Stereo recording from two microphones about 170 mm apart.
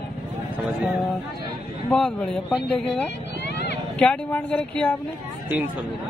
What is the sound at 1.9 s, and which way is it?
A man's voice, 5° left (ahead or behind).